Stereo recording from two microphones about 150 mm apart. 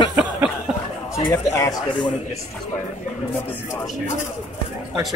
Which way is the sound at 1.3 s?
25° left (ahead or behind).